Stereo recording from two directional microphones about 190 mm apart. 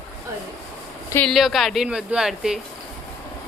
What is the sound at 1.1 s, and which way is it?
A woman's voice, 5° left (ahead or behind).